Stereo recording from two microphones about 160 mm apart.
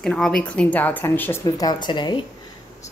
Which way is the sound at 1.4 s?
25° left (ahead or behind).